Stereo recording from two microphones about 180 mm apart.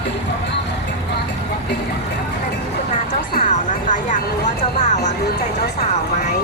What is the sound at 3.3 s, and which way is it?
Speech, 45° left (ahead or behind).